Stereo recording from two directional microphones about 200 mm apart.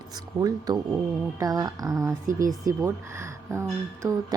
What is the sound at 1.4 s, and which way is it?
Speech, 20° right (ahead or behind).